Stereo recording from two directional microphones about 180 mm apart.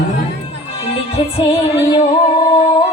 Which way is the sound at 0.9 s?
35° left (ahead or behind).